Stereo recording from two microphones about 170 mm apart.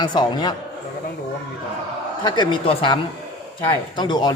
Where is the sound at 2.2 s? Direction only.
25° left (ahead or behind).